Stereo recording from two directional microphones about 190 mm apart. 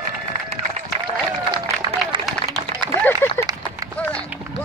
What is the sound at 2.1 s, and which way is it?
Run, 25° right (ahead or behind).